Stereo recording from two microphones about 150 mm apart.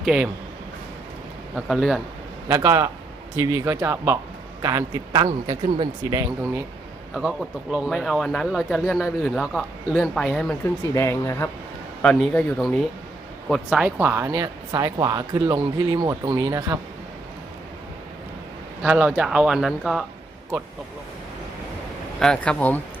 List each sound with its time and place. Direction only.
0.0 s speech: 5° right (ahead or behind)
1.5 s a man's voice: centre (ahead or behind)
2.5 s speech: 20° right (ahead or behind)
7.1 s a man's voice: 5° right (ahead or behind)
10.9 s speech: 20° left (ahead or behind)
12.0 s a man's voice: 5° left (ahead or behind); by 16.7 s 20° right (ahead or behind)
18.8 s a man's voice: 10° right (ahead or behind)
22.2 s speech: 5° left (ahead or behind)